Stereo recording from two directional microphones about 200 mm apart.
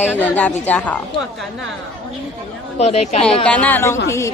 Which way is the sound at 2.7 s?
30° left (ahead or behind).